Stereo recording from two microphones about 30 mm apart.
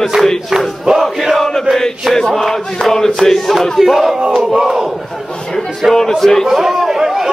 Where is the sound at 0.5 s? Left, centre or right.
Right.